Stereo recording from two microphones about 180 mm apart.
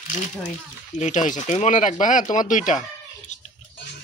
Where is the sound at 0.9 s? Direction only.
40° left (ahead or behind).